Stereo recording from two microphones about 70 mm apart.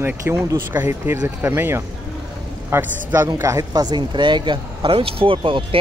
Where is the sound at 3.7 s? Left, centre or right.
Right.